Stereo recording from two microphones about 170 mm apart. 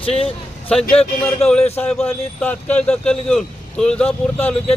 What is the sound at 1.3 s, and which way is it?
Speech, 5° left (ahead or behind).